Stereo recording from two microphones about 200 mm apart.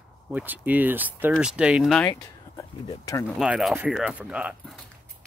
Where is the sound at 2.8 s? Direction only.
15° left (ahead or behind).